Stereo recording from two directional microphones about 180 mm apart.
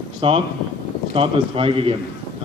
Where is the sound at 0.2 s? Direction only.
30° right (ahead or behind).